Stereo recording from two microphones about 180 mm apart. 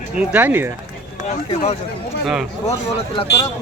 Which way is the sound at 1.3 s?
35° left (ahead or behind).